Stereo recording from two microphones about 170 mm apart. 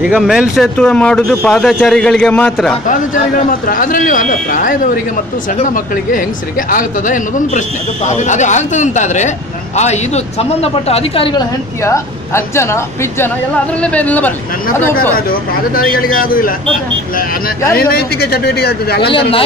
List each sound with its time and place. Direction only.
0.0 s speech: 5° right (ahead or behind)
2.9 s a man's voice: 50° left (ahead or behind)
6.7 s a man's voice: 50° left (ahead or behind); by 11.4 s 30° left (ahead or behind)
11.8 s a woman's voice: 15° left (ahead or behind)
15.1 s speech: 60° left (ahead or behind)
17.7 s speech: 65° left (ahead or behind)